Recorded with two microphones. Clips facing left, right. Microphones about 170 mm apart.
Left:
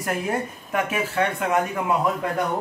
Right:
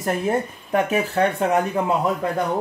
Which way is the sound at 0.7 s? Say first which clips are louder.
Right 5 dB; 35° right (ahead or behind).